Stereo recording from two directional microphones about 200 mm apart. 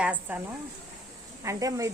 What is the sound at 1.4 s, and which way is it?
Speech, 15° right (ahead or behind).